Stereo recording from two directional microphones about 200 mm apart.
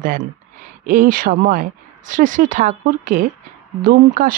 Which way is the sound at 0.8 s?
45° right (ahead or behind).